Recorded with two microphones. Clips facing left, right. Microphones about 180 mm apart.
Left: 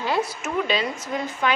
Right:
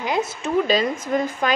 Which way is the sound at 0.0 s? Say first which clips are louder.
Right 1 dB; 20° right (ahead or behind).